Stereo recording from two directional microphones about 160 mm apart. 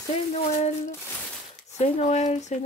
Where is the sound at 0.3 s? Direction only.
40° left (ahead or behind).